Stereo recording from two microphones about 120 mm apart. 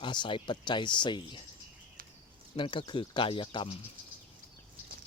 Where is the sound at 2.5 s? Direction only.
45° left (ahead or behind).